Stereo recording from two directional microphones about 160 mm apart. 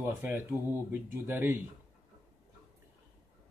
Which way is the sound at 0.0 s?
10° right (ahead or behind).